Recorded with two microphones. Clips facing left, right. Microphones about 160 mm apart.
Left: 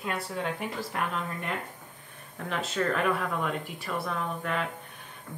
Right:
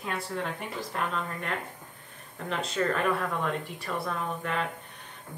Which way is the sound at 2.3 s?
Centre (ahead or behind).